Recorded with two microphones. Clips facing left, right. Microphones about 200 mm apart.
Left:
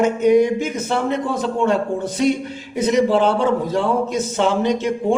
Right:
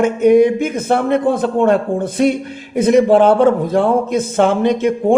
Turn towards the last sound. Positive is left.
turn(degrees=-55)  # may be behind; listen again after turning